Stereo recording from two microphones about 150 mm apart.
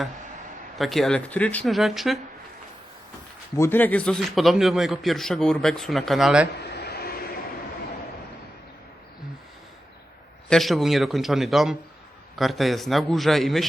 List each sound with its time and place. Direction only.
0.8 s a man's voice: centre (ahead or behind)
1.7 s a man's voice: centre (ahead or behind)
3.5 s a man's voice: 15° left (ahead or behind); by 6.5 s 5° right (ahead or behind)
6.7 s vehicle: 90° left
10.5 s a man's voice: centre (ahead or behind)